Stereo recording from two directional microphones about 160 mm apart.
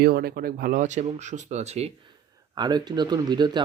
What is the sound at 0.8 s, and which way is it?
Speech, 50° right (ahead or behind).